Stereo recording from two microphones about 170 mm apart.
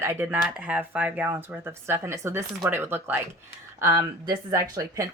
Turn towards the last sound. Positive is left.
turn(degrees=-20)  # may be behind; listen again after turning